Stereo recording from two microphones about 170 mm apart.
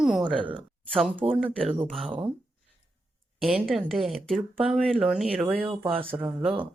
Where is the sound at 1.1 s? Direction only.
30° right (ahead or behind).